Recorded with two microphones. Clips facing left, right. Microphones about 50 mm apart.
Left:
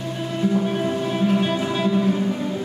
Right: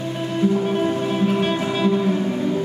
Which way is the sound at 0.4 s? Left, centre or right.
Centre.